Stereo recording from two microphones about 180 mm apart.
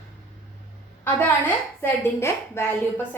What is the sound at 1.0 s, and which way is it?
A woman's voice, 10° left (ahead or behind).